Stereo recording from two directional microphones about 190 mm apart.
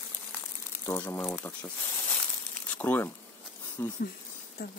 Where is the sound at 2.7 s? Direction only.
10° left (ahead or behind).